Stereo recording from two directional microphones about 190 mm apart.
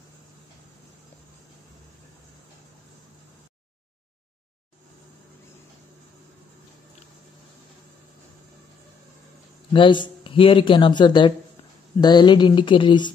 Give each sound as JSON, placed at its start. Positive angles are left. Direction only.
{"t": 9.7, "sound": "speech", "side_deg": 25}